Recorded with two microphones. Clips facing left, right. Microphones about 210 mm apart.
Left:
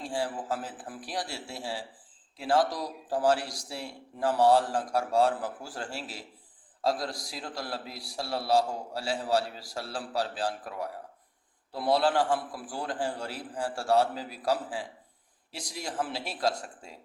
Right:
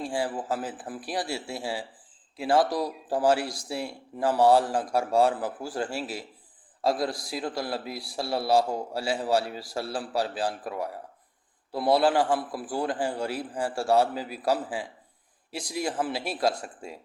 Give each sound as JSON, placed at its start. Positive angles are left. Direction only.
{"t": 0.0, "sound": "speech", "side_deg": -10}
{"t": 11.8, "sound": "speech", "side_deg": -10}